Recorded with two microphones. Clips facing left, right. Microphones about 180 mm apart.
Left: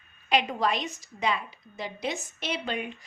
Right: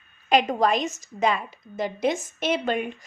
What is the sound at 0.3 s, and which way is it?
A woman's voice, 45° right (ahead or behind).